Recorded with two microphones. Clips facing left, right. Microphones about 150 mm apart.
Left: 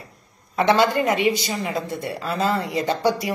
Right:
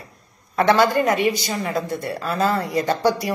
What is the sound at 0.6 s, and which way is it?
A woman's voice, 20° left (ahead or behind).